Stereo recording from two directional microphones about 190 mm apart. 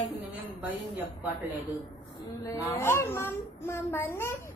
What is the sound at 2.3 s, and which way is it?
A child's voice, 15° left (ahead or behind).